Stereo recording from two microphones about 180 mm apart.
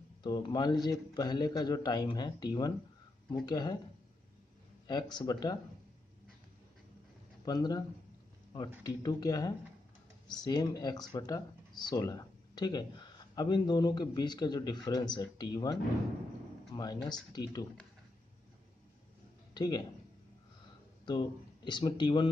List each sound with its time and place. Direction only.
0.2 s speech: 25° left (ahead or behind)
4.8 s speech: 25° left (ahead or behind)
7.4 s speech: 20° left (ahead or behind)
8.8 s speech: 20° left (ahead or behind)
19.5 s speech: 25° left (ahead or behind)
21.0 s speech: 25° left (ahead or behind)